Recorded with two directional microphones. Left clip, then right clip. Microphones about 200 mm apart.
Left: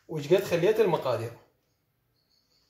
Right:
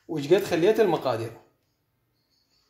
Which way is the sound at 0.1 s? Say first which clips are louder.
Right 2 dB; 55° right (ahead or behind).